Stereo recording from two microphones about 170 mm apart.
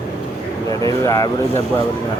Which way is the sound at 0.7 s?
20° left (ahead or behind).